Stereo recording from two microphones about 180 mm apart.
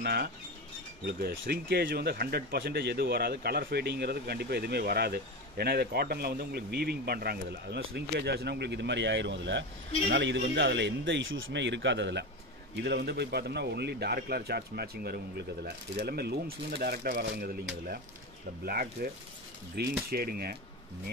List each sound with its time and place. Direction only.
0.0 s speech: 65° right (ahead or behind); by 12.3 s 80° right
12.7 s speech: 65° right (ahead or behind)
20.1 s speech: 55° right (ahead or behind)